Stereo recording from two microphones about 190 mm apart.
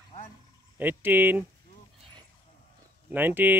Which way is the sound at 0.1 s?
25° left (ahead or behind).